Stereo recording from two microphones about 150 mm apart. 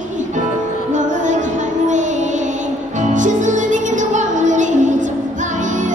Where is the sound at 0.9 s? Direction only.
55° right (ahead or behind).